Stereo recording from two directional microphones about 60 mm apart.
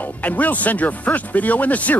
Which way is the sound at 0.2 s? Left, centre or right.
Left.